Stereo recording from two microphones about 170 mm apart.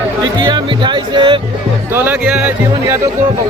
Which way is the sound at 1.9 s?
10° right (ahead or behind).